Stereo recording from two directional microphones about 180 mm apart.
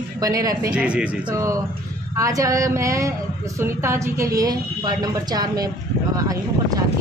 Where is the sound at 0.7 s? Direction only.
5° right (ahead or behind).